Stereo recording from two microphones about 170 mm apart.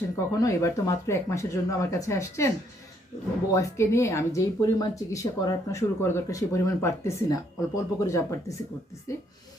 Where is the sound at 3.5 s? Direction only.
15° left (ahead or behind).